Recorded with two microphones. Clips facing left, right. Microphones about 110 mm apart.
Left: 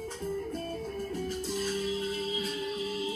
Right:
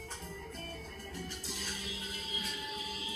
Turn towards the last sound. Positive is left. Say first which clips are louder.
# left 10 dB
turn(degrees=35)  # may be behind; listen again after turning